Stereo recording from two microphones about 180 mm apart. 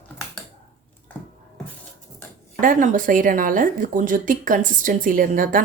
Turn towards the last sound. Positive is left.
turn(degrees=-50)  # may be behind; listen again after turning